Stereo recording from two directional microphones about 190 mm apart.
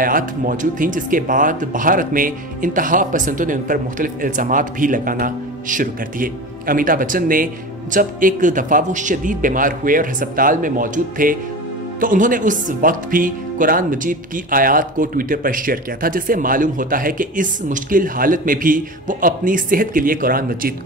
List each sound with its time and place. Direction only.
0.0 s speech: 45° right (ahead or behind)